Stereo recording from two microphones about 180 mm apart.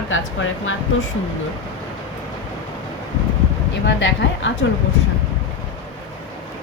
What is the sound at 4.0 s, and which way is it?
Speech, 90° left.